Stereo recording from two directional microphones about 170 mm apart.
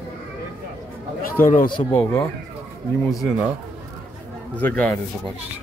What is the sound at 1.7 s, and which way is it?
Speech, 30° left (ahead or behind).